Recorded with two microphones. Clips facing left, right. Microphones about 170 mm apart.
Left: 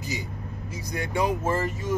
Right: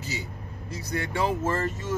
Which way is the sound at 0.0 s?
15° left (ahead or behind).